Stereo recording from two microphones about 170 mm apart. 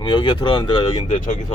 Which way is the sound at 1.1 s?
45° left (ahead or behind).